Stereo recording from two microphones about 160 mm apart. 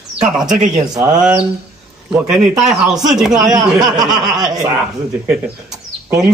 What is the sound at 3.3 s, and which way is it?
Speech, 25° right (ahead or behind).